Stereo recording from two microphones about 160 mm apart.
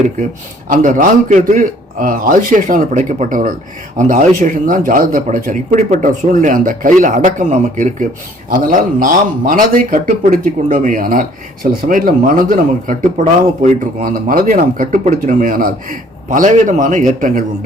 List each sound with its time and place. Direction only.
0.7 s speech: 55° right (ahead or behind)
8.4 s speech: 60° right (ahead or behind)